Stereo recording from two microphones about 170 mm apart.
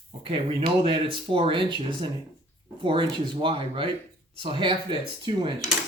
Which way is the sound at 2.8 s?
30° right (ahead or behind).